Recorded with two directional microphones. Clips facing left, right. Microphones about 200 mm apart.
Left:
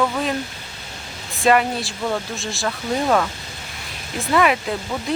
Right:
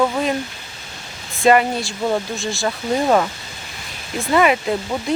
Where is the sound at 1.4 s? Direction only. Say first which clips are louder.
Right 3 dB; centre (ahead or behind).